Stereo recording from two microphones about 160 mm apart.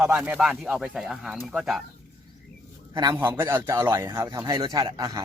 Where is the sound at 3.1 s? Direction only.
15° right (ahead or behind).